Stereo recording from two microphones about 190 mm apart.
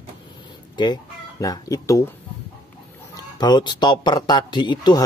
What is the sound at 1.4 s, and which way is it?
Speech, 20° left (ahead or behind).